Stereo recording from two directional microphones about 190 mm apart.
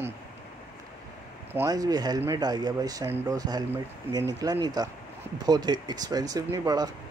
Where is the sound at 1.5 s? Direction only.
15° right (ahead or behind).